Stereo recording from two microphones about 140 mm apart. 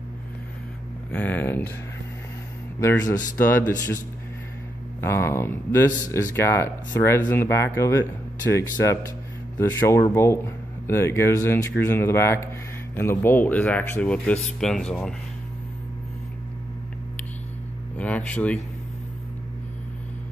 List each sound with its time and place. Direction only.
1.1 s speech: 10° left (ahead or behind)
2.8 s speech: 20° left (ahead or behind)
5.0 s speech: 20° left (ahead or behind)
17.9 s a sound: 10° left (ahead or behind)